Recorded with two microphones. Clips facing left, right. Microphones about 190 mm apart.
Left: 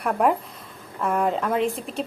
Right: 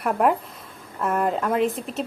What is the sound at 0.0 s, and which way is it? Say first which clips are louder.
Speech: even; centre (ahead or behind).